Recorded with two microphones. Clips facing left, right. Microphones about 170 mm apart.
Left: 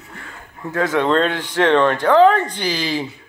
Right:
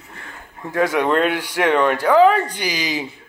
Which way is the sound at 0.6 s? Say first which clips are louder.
Even; 15° right (ahead or behind).